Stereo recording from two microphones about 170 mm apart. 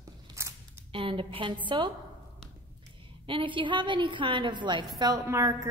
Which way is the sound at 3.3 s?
30° right (ahead or behind).